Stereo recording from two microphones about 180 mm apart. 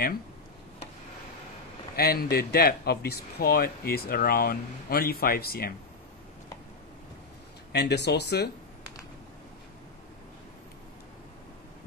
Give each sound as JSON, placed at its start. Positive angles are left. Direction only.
{"t": 2.0, "sound": "speech", "side_deg": 60}
{"t": 7.7, "sound": "speech", "side_deg": 70}